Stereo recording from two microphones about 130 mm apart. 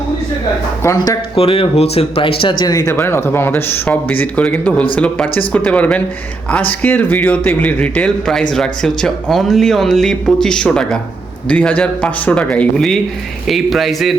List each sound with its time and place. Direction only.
0.8 s speech: 20° left (ahead or behind)
1.4 s a man's voice: 45° left (ahead or behind); by 14.2 s centre (ahead or behind)